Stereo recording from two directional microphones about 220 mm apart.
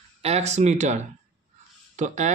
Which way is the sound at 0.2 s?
30° right (ahead or behind).